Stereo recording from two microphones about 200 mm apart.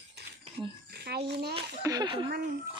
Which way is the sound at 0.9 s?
55° right (ahead or behind).